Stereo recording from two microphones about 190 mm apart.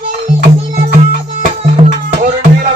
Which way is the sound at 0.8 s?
45° right (ahead or behind).